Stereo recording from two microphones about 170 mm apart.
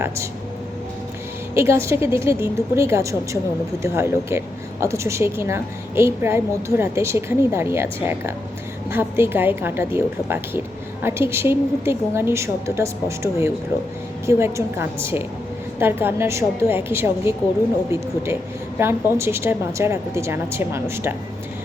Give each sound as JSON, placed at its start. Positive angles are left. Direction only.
{"t": 1.5, "sound": "speech", "side_deg": -15}
{"t": 18.8, "sound": "speech", "side_deg": -15}